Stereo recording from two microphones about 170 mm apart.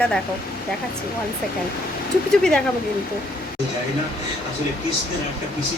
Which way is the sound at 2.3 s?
5° left (ahead or behind).